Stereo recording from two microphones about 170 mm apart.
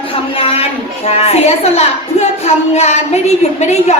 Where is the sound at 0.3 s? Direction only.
35° left (ahead or behind).